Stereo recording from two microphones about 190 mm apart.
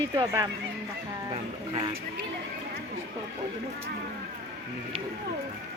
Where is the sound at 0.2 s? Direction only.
20° right (ahead or behind).